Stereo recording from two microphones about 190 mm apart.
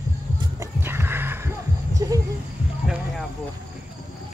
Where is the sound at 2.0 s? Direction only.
20° right (ahead or behind).